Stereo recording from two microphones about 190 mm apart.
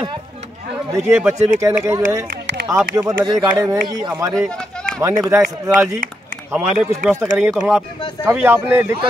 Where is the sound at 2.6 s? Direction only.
15° right (ahead or behind).